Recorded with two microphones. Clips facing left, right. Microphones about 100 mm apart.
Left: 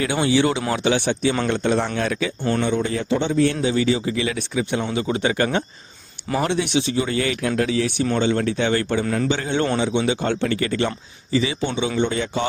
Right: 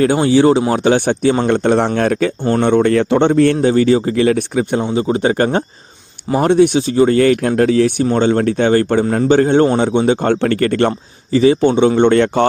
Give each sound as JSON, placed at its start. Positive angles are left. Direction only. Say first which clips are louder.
{"t": 0.0, "sound": "speech", "louder": "right 8 dB", "side_deg": -40}
{"t": 4.8, "sound": "speech", "louder": "right 7 dB", "side_deg": -30}